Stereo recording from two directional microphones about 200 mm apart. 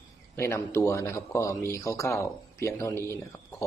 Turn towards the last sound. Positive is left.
turn(degrees=15)  # may be behind; listen again after turning